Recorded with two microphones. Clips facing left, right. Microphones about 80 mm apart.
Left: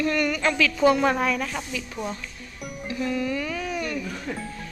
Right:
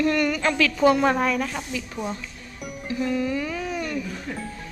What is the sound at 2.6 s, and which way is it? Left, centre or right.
Music, centre.